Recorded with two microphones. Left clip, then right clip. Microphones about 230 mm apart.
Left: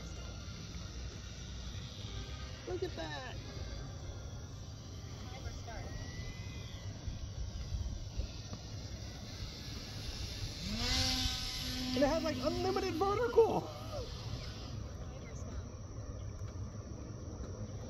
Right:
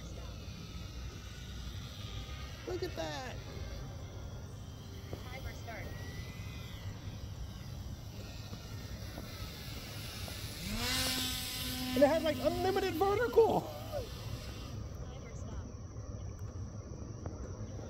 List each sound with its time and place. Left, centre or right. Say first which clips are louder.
2.8 s speech: right 2 dB; right
10.0 s vehicle: even; centre
12.0 s a sound: right 5 dB; right